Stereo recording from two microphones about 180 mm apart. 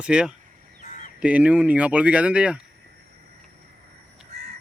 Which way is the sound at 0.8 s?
45° left (ahead or behind).